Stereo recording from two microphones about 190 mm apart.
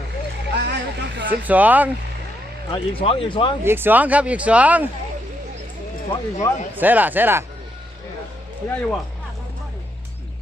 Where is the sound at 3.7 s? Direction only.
10° right (ahead or behind).